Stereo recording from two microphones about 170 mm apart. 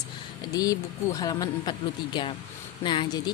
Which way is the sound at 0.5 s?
20° left (ahead or behind).